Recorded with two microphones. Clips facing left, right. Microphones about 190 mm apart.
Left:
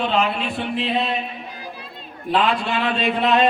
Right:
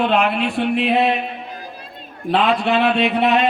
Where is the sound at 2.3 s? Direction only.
65° right (ahead or behind).